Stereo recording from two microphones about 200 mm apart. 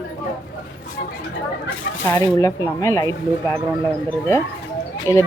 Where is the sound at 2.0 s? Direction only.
20° left (ahead or behind).